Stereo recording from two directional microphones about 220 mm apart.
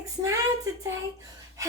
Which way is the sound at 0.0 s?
15° right (ahead or behind).